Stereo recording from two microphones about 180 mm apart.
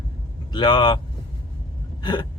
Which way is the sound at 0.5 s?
25° left (ahead or behind).